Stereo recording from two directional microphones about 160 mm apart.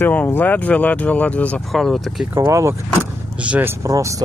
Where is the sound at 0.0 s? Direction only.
10° left (ahead or behind).